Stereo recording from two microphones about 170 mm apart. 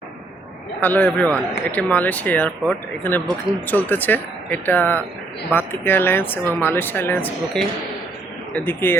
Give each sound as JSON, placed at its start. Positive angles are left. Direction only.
{"t": 0.8, "sound": "speech", "side_deg": 10}